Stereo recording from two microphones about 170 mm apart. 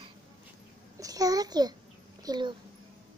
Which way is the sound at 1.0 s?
20° right (ahead or behind).